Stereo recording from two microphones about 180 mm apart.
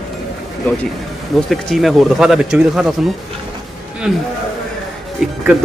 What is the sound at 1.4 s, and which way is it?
A man's voice, centre (ahead or behind).